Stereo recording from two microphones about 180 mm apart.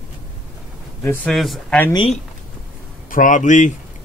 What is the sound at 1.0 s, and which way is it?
Speech, 10° left (ahead or behind).